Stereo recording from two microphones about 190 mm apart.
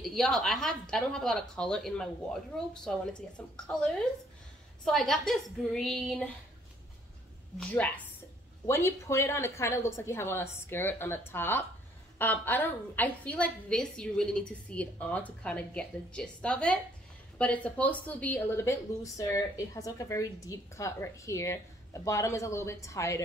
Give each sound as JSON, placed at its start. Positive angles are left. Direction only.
{"t": 0.0, "sound": "speech", "side_deg": 0}
{"t": 7.5, "sound": "speech", "side_deg": 5}